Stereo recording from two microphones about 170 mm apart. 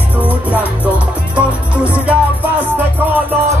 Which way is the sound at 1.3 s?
5° right (ahead or behind).